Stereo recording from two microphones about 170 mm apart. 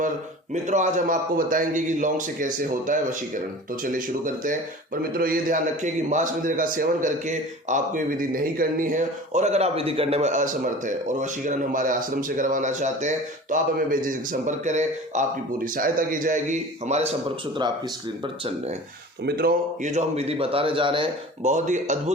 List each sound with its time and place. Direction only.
0.5 s a man's voice: 45° right (ahead or behind)
19.2 s speech: 65° right (ahead or behind)
19.8 s speech: 40° right (ahead or behind)
21.5 s a man's voice: 45° right (ahead or behind)